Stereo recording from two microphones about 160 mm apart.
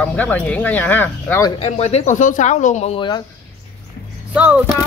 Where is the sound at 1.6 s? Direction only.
40° left (ahead or behind).